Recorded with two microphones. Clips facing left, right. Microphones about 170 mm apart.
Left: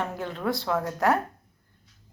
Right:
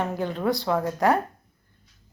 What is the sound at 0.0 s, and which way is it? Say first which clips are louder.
Speech: right 4 dB; centre (ahead or behind).